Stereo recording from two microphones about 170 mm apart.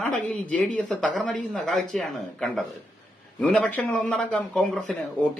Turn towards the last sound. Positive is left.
turn(degrees=5)  # may be behind; listen again after turning